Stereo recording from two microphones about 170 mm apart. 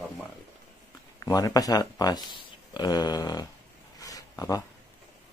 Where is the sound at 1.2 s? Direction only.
20° left (ahead or behind).